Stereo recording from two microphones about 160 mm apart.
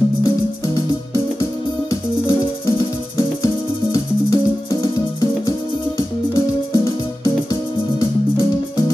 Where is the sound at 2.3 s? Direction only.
30° left (ahead or behind).